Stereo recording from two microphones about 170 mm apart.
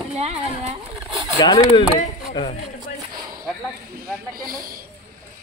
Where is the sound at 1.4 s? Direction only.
30° left (ahead or behind).